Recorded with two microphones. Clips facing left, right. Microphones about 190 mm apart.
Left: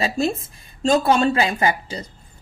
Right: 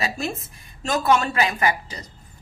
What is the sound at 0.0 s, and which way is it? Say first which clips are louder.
A woman's voice: left 6 dB; 30° left (ahead or behind).